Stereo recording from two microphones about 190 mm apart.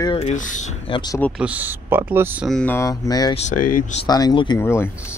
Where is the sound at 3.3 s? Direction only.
45° left (ahead or behind).